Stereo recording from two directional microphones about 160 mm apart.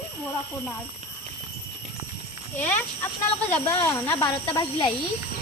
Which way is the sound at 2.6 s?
10° left (ahead or behind).